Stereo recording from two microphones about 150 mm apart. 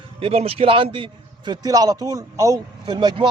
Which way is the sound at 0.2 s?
40° right (ahead or behind).